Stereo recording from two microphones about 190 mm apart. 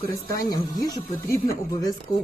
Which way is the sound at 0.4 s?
20° left (ahead or behind).